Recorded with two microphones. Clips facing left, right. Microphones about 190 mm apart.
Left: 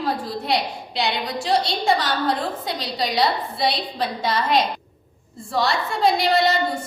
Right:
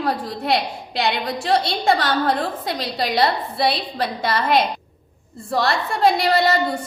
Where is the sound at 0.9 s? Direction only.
60° right (ahead or behind).